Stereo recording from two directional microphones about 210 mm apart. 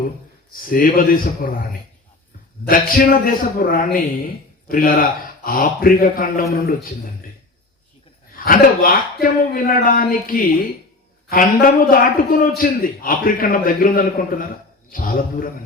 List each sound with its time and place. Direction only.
0.6 s a man's voice: 40° left (ahead or behind)
2.6 s a man's voice: 45° left (ahead or behind)
8.4 s a man's voice: 40° left (ahead or behind)